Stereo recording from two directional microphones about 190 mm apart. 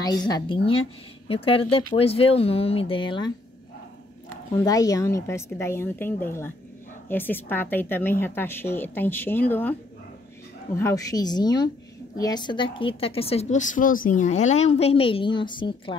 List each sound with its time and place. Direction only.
0.0 s a woman's voice: 20° left (ahead or behind)
4.6 s a woman's voice: 20° left (ahead or behind)
10.8 s a woman's voice: 15° left (ahead or behind)